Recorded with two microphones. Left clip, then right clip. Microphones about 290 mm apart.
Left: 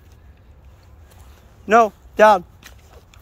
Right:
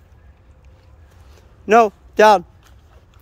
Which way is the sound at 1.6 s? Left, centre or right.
Right.